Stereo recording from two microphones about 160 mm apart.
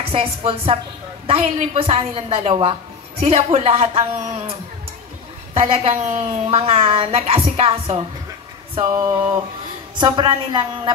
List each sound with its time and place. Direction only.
0.0 s a woman's voice: 35° right (ahead or behind)
9.9 s a woman's voice: 30° right (ahead or behind)